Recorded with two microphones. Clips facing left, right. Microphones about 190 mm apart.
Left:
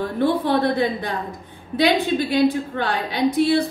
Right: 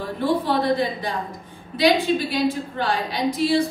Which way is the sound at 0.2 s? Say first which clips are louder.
Left 2 dB; 60° left (ahead or behind).